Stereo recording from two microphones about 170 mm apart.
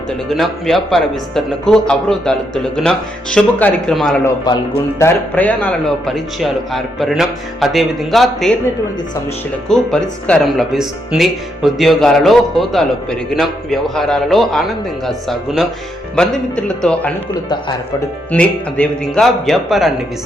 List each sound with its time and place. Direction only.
0.3 s speech: centre (ahead or behind)
4.5 s speech: 25° left (ahead or behind)
4.9 s speech: 10° left (ahead or behind)
9.6 s speech: 5° left (ahead or behind)
18.3 s speech: 5° left (ahead or behind)